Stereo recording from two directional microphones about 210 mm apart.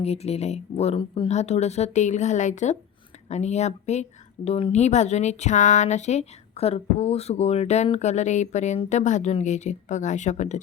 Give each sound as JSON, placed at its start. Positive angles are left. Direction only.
{"t": 0.0, "sound": "speech", "side_deg": 30}